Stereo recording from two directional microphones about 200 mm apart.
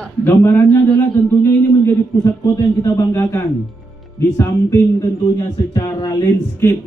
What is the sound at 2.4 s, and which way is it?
Speech, 15° left (ahead or behind).